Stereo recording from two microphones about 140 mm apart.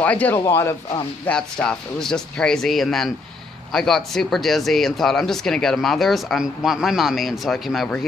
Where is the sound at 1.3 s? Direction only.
5° left (ahead or behind).